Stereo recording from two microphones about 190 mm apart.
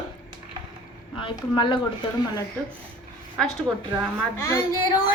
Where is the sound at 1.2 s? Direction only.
25° left (ahead or behind).